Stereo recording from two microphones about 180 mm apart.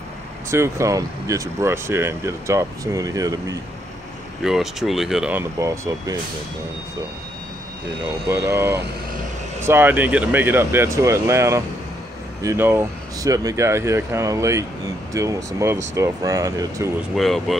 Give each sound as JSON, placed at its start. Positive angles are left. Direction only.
{"t": 0.5, "sound": "speech", "side_deg": -15}
{"t": 4.4, "sound": "speech", "side_deg": 0}
{"t": 8.3, "sound": "speech", "side_deg": -15}
{"t": 17.2, "sound": "speech", "side_deg": 0}